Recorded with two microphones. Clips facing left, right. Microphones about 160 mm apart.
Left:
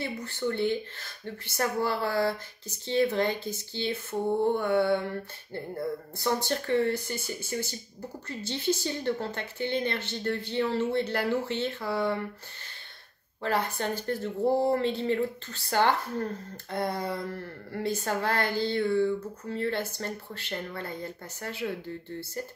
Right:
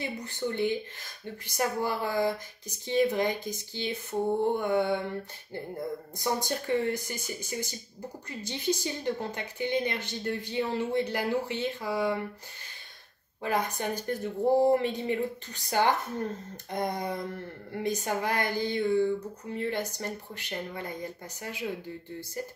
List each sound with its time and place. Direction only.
0.0 s speech: 15° right (ahead or behind)
13.4 s speech: 15° right (ahead or behind)